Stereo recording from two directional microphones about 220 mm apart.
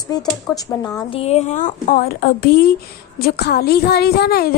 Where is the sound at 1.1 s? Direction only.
30° left (ahead or behind).